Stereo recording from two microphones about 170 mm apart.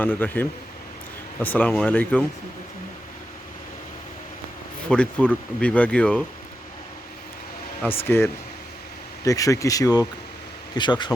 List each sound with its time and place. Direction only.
0.0 s speech: 10° left (ahead or behind)
4.9 s speech: 5° left (ahead or behind)
7.8 s speech: 10° left (ahead or behind)